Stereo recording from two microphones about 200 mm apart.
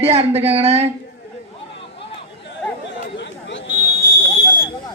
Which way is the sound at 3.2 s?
65° left (ahead or behind).